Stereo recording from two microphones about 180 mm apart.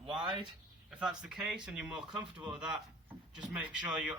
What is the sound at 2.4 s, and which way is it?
Speech, 5° right (ahead or behind).